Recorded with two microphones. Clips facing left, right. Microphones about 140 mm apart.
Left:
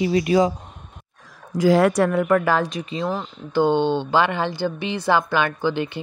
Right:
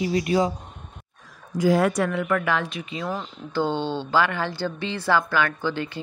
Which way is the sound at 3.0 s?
25° left (ahead or behind).